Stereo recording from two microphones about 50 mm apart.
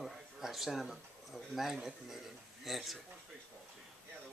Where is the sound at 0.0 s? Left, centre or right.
Centre.